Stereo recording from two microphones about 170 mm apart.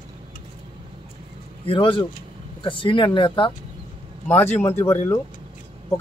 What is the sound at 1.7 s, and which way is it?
Speech, 30° left (ahead or behind).